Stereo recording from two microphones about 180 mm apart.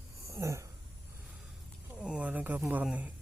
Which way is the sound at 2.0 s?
5° right (ahead or behind).